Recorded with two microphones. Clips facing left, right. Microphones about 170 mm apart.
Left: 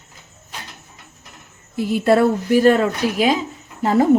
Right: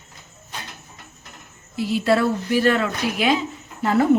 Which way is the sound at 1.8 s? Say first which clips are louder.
Left 4 dB; 50° left (ahead or behind).